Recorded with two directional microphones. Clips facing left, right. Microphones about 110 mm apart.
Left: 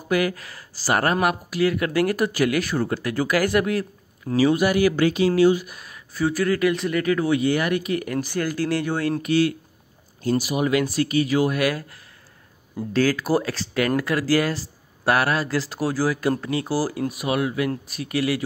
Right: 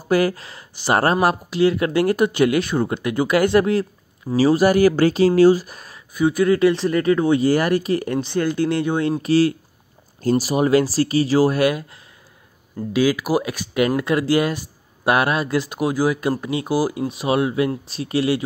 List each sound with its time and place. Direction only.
0.0 s speech: 30° right (ahead or behind)
5.9 s speech: 20° right (ahead or behind)
9.2 s speech: 30° right (ahead or behind)
12.9 s speech: 10° right (ahead or behind); by 18.4 s 25° right (ahead or behind)